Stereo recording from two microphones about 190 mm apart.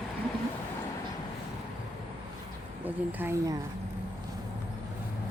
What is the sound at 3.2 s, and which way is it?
Speech, 10° right (ahead or behind).